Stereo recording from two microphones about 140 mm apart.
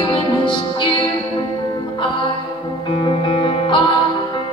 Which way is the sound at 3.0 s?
40° left (ahead or behind).